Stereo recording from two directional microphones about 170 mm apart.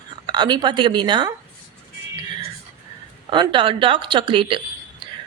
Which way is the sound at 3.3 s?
30° right (ahead or behind).